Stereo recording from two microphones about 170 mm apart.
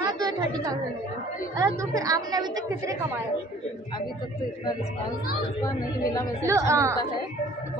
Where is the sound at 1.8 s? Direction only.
20° right (ahead or behind).